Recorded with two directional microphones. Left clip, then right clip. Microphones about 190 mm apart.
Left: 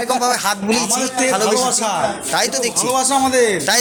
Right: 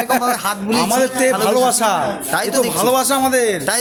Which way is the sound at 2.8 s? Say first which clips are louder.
Left 1 dB; 40° right (ahead or behind).